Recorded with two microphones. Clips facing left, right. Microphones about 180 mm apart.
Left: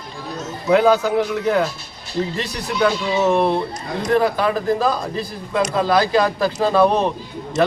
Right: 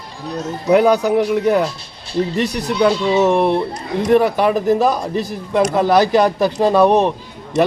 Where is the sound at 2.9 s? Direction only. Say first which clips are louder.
Right 4 dB; 20° right (ahead or behind).